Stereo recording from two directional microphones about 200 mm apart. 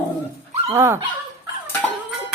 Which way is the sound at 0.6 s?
15° right (ahead or behind).